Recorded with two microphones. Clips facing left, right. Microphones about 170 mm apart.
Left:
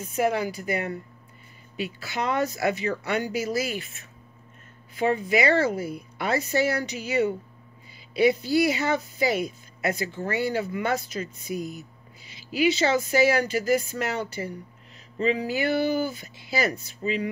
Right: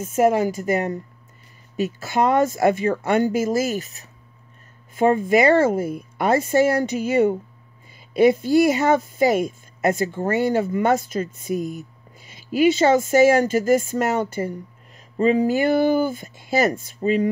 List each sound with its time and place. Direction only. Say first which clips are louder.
0.0 s a woman's voice: right 7 dB; 45° right (ahead or behind)